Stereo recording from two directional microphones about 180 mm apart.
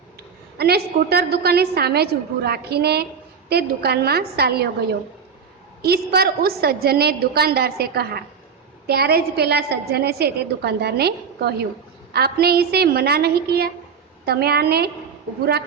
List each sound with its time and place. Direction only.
0.6 s a woman's voice: 60° right (ahead or behind)
5.8 s a woman's voice: 60° right (ahead or behind)